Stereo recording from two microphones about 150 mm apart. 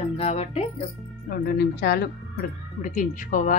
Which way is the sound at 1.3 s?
90° left.